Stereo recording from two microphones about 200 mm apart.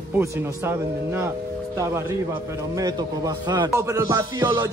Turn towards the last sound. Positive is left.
turn(degrees=-20)  # may be behind; listen again after turning